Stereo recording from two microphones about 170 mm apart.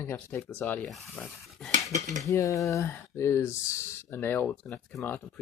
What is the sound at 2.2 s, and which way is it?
Speech, 20° left (ahead or behind).